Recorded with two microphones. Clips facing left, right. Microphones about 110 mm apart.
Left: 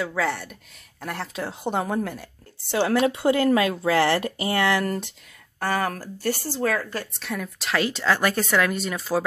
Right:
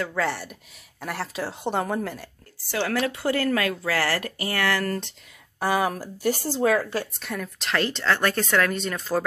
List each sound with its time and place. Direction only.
0.0 s a woman's voice: 5° left (ahead or behind)
2.7 s speech: 20° left (ahead or behind)
5.6 s speech: 10° right (ahead or behind)
7.2 s a woman's voice: centre (ahead or behind)